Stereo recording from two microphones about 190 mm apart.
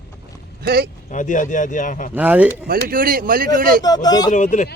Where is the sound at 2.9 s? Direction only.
50° right (ahead or behind).